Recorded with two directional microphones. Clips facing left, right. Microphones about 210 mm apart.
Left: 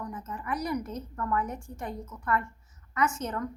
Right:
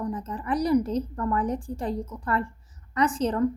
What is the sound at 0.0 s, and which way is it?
A child's voice, 30° right (ahead or behind).